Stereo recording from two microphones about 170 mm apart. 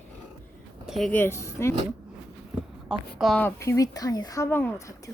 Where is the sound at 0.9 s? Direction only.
Centre (ahead or behind).